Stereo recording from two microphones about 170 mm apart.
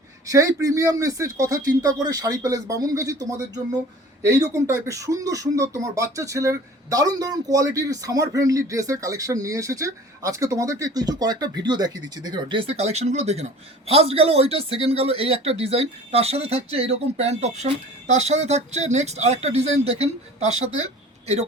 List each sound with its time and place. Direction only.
0.3 s speech: 20° right (ahead or behind); by 20.7 s 40° right (ahead or behind)